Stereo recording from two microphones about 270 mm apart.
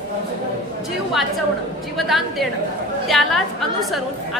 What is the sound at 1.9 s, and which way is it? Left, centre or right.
A woman's voice, centre.